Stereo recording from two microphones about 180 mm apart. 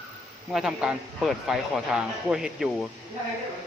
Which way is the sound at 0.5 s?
5° right (ahead or behind).